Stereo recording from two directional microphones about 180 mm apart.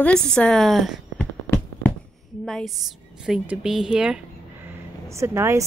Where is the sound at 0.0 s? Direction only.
5° left (ahead or behind).